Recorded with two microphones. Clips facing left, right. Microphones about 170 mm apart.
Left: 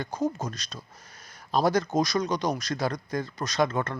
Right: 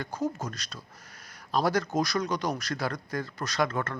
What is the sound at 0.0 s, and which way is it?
Speech, 20° left (ahead or behind).